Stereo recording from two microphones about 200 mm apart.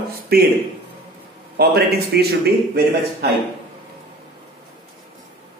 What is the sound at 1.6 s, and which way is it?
A man's voice, 50° right (ahead or behind).